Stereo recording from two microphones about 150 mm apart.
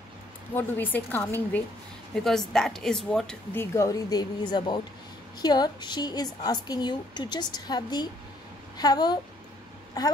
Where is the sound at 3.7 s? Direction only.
20° left (ahead or behind).